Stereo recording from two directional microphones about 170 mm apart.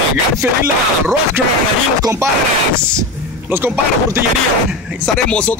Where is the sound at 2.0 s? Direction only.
20° right (ahead or behind).